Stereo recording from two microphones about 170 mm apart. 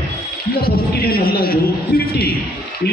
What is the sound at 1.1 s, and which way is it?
Speech, 60° left (ahead or behind).